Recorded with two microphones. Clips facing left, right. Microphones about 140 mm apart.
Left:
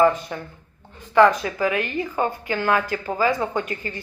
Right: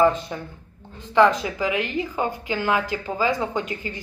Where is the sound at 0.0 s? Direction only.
20° right (ahead or behind).